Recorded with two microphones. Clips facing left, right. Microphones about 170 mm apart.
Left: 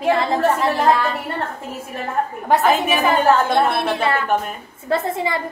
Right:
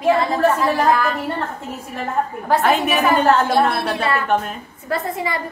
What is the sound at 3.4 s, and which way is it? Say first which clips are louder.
A woman's voice: even; 20° left (ahead or behind).